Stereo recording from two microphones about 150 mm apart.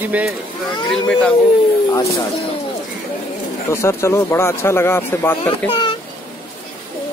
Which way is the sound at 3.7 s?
20° left (ahead or behind).